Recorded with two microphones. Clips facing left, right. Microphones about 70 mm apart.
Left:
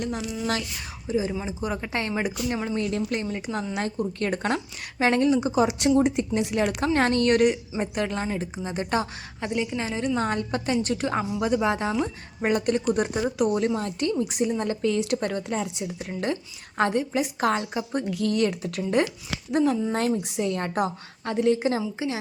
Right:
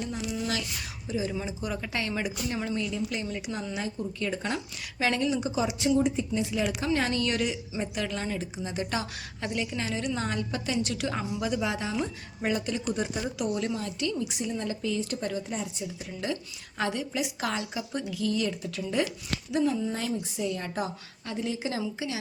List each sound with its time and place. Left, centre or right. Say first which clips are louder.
0.0 s a woman's voice: left 3 dB; left
1.0 s a woman's voice: left 5 dB; left
2.9 s a woman's voice: left 5 dB; left
3.2 s a woman's voice: left 4 dB; left
3.8 s a woman's voice: left 5 dB; left
5.0 s a woman's voice: left 6 dB; left
5.8 s a woman's voice: left 4 dB; left
7.8 s a woman's voice: left 5 dB; left
9.4 s a woman's voice: left 4 dB; centre
10.2 s a woman's voice: left 5 dB; left
16.0 s a woman's voice: left 5 dB; left
18.1 s a woman's voice: left 5 dB; left
20.2 s a woman's voice: left 5 dB; left
21.7 s a woman's voice: left 5 dB; left